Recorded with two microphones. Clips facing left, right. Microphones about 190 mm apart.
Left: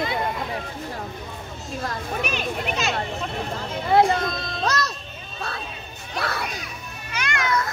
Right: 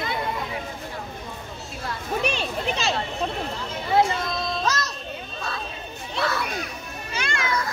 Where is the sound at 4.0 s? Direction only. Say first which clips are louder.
Left 2 dB; 60° left (ahead or behind).